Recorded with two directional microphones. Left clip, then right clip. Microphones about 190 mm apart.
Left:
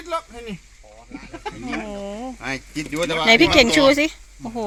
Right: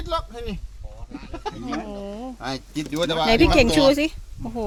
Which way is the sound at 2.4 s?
15° right (ahead or behind).